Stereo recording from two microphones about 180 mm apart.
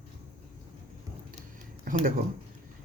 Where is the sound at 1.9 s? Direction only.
50° right (ahead or behind).